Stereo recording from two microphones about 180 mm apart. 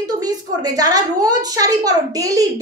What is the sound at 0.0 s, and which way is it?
A woman's voice, 20° right (ahead or behind).